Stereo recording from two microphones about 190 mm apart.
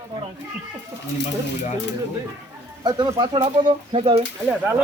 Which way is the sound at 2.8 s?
20° right (ahead or behind).